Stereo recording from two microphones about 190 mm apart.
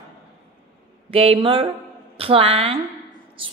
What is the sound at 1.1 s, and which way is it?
A woman's voice, 30° right (ahead or behind).